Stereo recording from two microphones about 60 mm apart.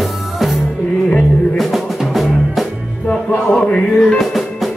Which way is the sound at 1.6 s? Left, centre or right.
Centre.